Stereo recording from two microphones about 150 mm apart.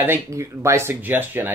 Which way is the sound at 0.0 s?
15° right (ahead or behind).